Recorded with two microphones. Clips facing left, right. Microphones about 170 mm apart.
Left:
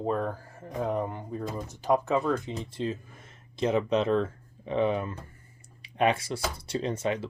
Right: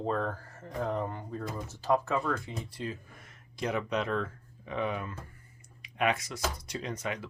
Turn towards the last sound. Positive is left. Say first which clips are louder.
# left 7 dB
turn(degrees=30)  # may be behind; listen again after turning